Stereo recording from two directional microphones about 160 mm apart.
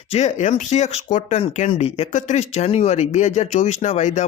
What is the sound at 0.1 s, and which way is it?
Speech, 45° left (ahead or behind).